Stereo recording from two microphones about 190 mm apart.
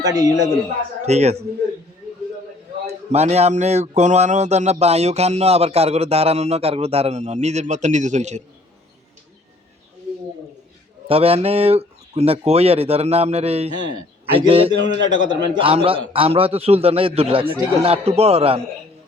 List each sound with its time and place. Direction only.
0.0 s a man's voice: 20° right (ahead or behind)
1.0 s speech: 35° right (ahead or behind)
2.8 s speech: 35° right (ahead or behind)
11.1 s a man's voice: 30° right (ahead or behind)